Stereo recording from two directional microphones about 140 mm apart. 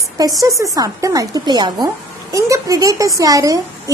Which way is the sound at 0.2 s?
25° right (ahead or behind).